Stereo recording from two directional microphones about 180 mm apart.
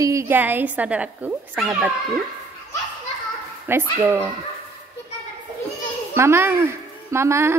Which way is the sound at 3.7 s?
15° right (ahead or behind).